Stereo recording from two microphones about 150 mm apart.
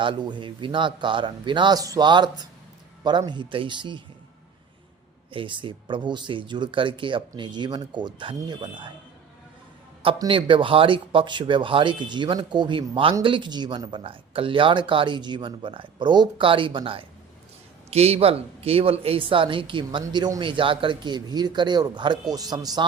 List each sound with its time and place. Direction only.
0.0 s speech: 30° right (ahead or behind)
5.3 s speech: 35° right (ahead or behind)
10.2 s speech: 35° right (ahead or behind)